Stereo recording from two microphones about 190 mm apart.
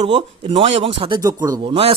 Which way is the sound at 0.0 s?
30° right (ahead or behind).